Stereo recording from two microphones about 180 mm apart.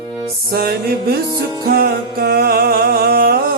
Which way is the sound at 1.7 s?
60° right (ahead or behind).